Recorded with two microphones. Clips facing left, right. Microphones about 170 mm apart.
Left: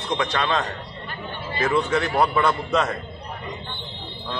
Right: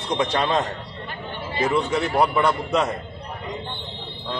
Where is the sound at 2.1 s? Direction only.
15° right (ahead or behind).